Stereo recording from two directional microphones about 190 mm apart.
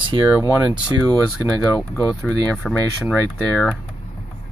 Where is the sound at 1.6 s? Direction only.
5° left (ahead or behind).